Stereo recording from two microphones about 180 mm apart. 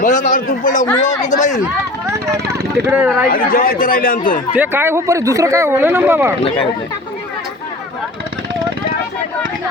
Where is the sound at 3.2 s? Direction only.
55° left (ahead or behind).